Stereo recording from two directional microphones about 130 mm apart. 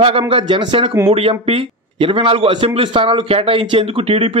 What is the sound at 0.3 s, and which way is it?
Speech, 40° right (ahead or behind).